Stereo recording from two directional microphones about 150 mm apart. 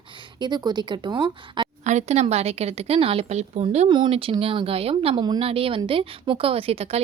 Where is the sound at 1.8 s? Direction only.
50° right (ahead or behind).